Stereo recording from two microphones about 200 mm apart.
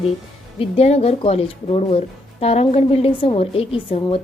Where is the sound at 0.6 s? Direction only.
30° left (ahead or behind).